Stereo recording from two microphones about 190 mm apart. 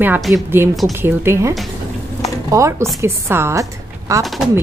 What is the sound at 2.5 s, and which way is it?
A woman's voice, 15° right (ahead or behind).